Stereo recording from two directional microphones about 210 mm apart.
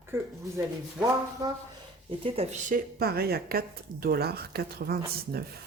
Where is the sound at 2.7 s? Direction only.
45° right (ahead or behind).